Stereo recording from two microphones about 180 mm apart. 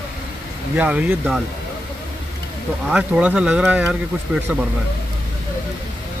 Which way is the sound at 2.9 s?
5° right (ahead or behind).